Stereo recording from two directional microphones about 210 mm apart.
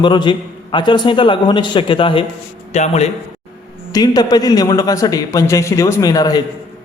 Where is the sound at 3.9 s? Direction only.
20° left (ahead or behind).